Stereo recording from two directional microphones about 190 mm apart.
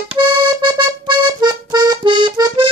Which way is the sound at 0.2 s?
25° right (ahead or behind).